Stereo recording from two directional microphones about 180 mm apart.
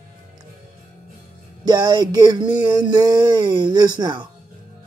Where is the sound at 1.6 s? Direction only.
20° right (ahead or behind).